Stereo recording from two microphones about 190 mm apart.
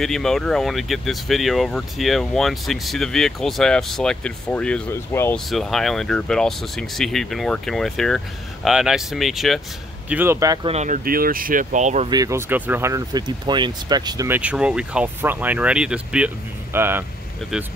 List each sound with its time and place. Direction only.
0.0 s speech: centre (ahead or behind)
5.5 s speech: centre (ahead or behind); by 10.7 s 20° right (ahead or behind)
10.7 s speech: 35° right (ahead or behind)
11.1 s speech: 50° right (ahead or behind)
12.1 s speech: 15° right (ahead or behind)